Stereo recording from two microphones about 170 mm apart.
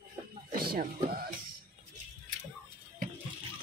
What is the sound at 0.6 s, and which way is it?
Speech, 65° right (ahead or behind).